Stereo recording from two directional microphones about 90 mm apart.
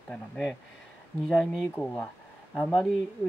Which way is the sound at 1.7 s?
15° left (ahead or behind).